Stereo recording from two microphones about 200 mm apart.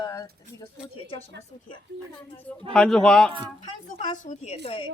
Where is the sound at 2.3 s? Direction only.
5° left (ahead or behind).